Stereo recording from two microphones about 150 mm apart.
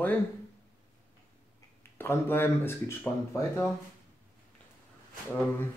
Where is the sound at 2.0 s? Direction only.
15° left (ahead or behind).